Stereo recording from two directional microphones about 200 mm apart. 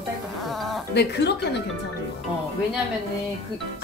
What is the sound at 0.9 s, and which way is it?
Speech, 55° left (ahead or behind).